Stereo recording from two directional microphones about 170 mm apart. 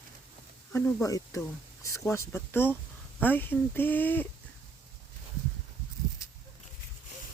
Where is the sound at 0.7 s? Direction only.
10° left (ahead or behind).